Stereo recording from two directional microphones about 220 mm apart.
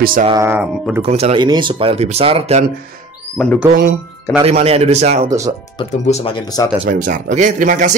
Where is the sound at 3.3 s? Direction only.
5° left (ahead or behind).